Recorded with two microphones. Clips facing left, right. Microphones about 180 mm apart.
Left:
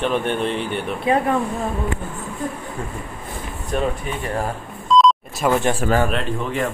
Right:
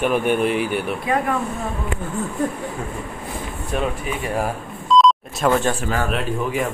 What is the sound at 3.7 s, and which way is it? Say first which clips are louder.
Speech: left 1 dB; 5° right (ahead or behind).